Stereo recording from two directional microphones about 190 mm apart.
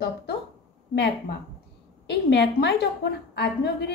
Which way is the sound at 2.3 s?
60° left (ahead or behind).